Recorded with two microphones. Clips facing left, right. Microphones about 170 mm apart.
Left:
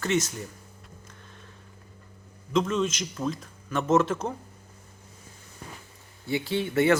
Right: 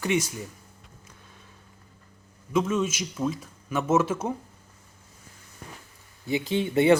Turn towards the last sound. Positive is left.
turn(degrees=-20)  # may be behind; listen again after turning